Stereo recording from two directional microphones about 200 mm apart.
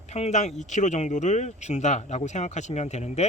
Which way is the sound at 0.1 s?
35° left (ahead or behind).